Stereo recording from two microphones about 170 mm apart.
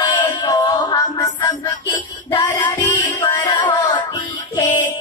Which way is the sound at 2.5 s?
25° left (ahead or behind).